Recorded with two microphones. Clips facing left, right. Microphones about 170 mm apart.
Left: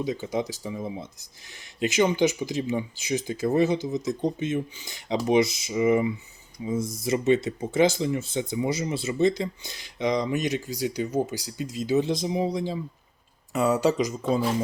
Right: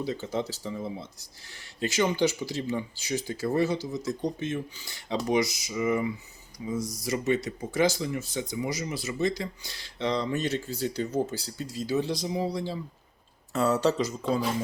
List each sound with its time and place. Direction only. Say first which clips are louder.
0.0 s speech: left 3 dB; 15° left (ahead or behind)